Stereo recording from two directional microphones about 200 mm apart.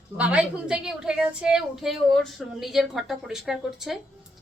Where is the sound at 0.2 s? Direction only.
5° right (ahead or behind).